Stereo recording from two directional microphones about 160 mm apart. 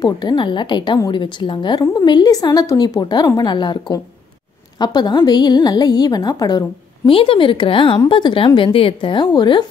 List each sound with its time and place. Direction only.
0.0 s a woman's voice: 25° left (ahead or behind)